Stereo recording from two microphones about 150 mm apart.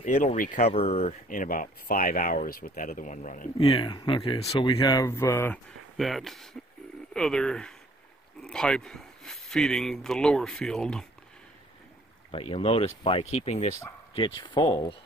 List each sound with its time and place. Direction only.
0.0 s speech: 55° left (ahead or behind)
3.6 s speech: 30° left (ahead or behind)
5.9 s speech: centre (ahead or behind)
12.3 s speech: 40° left (ahead or behind)
14.1 s speech: 35° left (ahead or behind)